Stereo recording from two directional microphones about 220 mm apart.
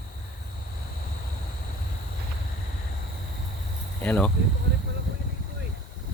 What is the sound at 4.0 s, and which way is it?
Speech, 5° left (ahead or behind).